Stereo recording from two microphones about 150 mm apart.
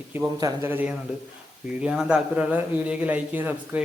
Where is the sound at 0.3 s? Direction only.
25° right (ahead or behind).